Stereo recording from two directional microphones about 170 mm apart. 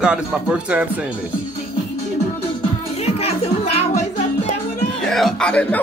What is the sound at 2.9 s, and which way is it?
Music, 35° left (ahead or behind).